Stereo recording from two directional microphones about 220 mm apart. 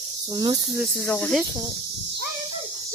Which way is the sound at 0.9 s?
5° left (ahead or behind).